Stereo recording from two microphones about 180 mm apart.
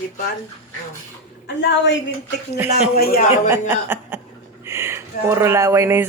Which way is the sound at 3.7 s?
10° right (ahead or behind).